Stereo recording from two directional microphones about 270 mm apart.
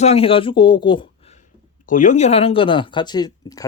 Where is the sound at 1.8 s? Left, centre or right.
Left; by 3.6 s centre.